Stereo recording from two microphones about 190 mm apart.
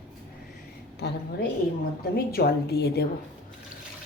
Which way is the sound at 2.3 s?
55° left (ahead or behind).